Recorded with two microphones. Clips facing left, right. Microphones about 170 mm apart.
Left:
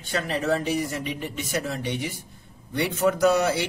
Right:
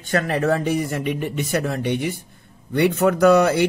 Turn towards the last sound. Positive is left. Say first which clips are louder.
# right 6 dB
turn(degrees=-55)  # may be behind; listen again after turning